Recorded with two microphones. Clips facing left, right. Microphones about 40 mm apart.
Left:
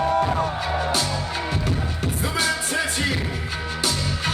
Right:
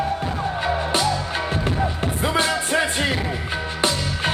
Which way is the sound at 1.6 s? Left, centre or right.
Right.